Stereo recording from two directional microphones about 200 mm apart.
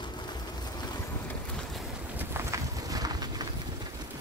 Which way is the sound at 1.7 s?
10° right (ahead or behind).